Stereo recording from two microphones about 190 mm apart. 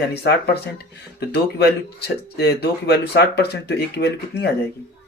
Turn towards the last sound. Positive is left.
turn(degrees=60)  # may be behind; listen again after turning